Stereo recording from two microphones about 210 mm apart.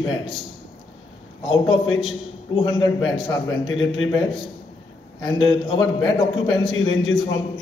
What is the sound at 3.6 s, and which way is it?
Speech, 70° left (ahead or behind).